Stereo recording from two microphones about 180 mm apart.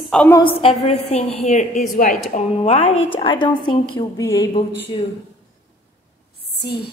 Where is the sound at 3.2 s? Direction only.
25° left (ahead or behind).